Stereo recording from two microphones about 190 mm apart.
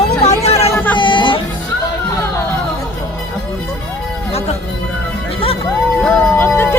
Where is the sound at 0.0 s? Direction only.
35° left (ahead or behind).